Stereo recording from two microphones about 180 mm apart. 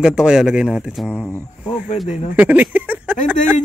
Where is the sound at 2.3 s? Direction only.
10° right (ahead or behind).